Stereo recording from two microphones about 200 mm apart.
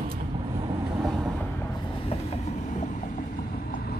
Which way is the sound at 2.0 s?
35° left (ahead or behind).